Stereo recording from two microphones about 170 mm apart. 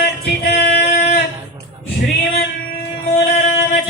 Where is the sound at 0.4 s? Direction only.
70° left (ahead or behind).